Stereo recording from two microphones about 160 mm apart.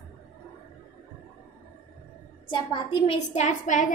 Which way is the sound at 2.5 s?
30° left (ahead or behind).